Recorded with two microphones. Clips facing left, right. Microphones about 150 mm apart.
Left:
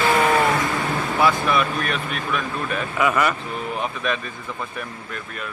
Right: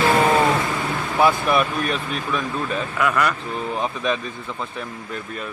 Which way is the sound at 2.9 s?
5° left (ahead or behind).